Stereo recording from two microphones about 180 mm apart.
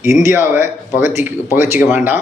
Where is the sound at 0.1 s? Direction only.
15° right (ahead or behind).